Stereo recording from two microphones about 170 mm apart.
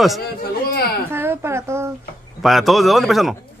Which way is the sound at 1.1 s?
15° right (ahead or behind).